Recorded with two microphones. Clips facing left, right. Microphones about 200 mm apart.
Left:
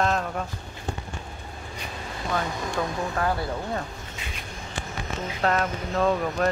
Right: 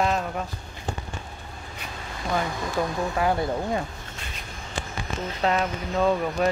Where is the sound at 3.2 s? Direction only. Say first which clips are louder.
Right 4 dB; 15° right (ahead or behind).